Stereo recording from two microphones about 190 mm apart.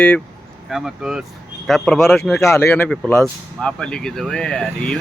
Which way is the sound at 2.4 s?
15° left (ahead or behind).